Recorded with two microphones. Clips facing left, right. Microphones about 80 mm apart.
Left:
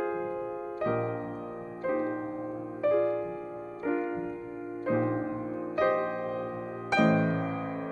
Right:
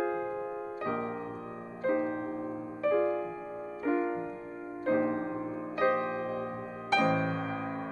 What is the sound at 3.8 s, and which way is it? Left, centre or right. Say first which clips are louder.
Music: even; centre.